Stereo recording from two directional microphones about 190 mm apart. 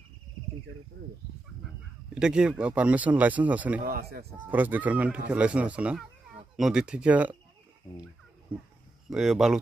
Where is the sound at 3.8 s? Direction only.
50° right (ahead or behind).